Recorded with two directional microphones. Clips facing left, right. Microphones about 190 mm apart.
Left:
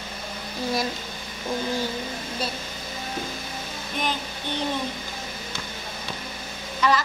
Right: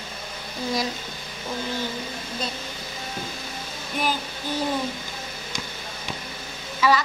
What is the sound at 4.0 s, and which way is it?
Child singing, 5° right (ahead or behind).